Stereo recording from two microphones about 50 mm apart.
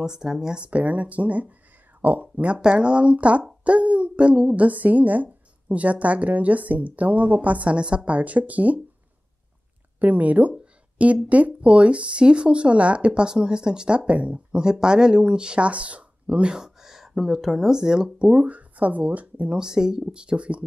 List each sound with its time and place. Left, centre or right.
0.0 s speech: centre
0.7 s speech: right
9.9 s speech: right
10.6 s a sound: right
11.2 s speech: right
14.6 s speech: centre
18.3 s speech: right
19.5 s speech: centre